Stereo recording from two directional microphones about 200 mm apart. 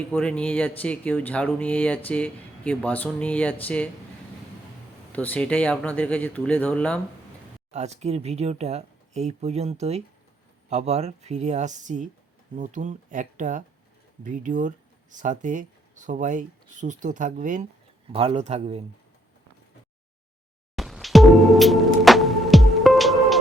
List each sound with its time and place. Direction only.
0.0 s speech: 5° left (ahead or behind)
5.1 s speech: 10° left (ahead or behind)
7.7 s speech: 35° right (ahead or behind)
18.1 s speech: 30° right (ahead or behind)
20.7 s music: centre (ahead or behind)